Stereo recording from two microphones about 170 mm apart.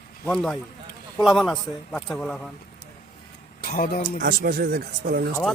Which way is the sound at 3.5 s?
55° left (ahead or behind).